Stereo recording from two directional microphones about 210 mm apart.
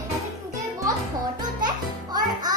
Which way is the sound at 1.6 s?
20° right (ahead or behind).